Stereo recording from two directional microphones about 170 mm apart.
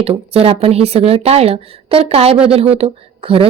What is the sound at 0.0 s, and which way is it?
Speech, 35° right (ahead or behind).